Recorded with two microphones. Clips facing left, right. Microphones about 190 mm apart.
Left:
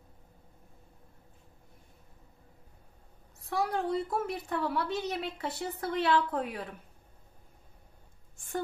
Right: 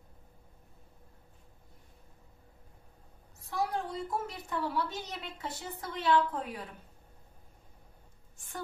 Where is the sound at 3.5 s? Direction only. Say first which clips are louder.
Left 4 dB; 60° left (ahead or behind).